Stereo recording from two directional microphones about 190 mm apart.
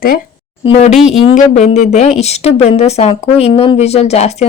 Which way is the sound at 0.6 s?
35° left (ahead or behind).